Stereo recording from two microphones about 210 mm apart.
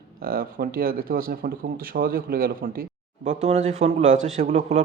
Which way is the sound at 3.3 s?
30° right (ahead or behind).